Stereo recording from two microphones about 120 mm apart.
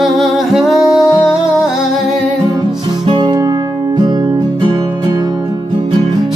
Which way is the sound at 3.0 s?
45° right (ahead or behind).